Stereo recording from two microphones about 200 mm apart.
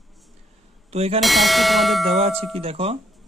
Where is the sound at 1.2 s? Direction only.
Centre (ahead or behind).